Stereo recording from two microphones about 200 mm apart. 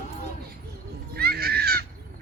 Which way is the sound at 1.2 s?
50° right (ahead or behind).